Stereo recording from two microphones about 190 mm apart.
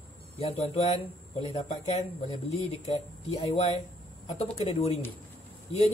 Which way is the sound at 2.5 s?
35° left (ahead or behind).